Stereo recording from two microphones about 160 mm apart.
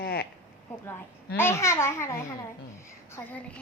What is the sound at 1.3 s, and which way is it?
A woman's voice, 15° left (ahead or behind).